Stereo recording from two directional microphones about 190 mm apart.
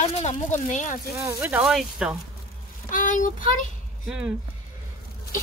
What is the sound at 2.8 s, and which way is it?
Speech, 45° left (ahead or behind).